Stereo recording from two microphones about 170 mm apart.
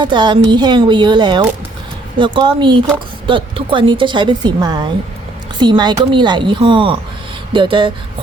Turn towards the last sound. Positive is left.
turn(degrees=-30)  # may be behind; listen again after turning